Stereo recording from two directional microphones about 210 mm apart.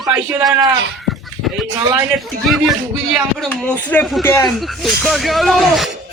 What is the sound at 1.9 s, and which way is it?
Speech, centre (ahead or behind).